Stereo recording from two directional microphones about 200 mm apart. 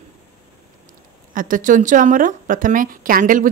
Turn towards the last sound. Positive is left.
turn(degrees=-40)  # may be behind; listen again after turning